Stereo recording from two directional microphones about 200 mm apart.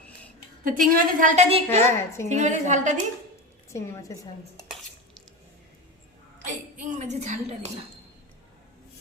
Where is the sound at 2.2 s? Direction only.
35° right (ahead or behind).